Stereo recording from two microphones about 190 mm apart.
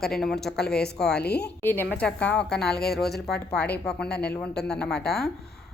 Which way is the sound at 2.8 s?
55° left (ahead or behind).